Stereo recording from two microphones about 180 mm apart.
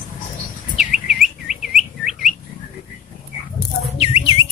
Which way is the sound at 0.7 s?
5° right (ahead or behind).